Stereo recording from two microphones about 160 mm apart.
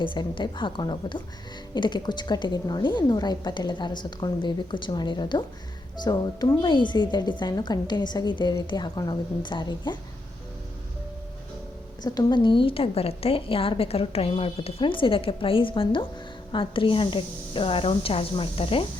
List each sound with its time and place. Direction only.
0.0 s a woman's voice: 30° left (ahead or behind)
12.0 s a woman's voice: 25° left (ahead or behind)